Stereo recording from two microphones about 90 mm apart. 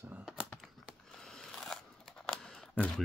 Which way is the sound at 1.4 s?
5° left (ahead or behind).